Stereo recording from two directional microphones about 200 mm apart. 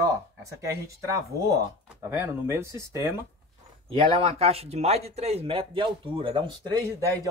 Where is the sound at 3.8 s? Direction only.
25° right (ahead or behind).